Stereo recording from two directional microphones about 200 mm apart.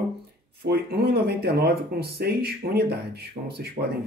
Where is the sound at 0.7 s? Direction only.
50° right (ahead or behind).